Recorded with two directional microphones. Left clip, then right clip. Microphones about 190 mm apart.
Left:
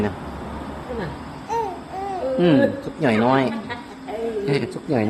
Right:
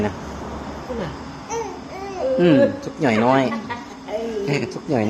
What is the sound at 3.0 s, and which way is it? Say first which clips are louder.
A man's voice: right 1 dB; centre (ahead or behind).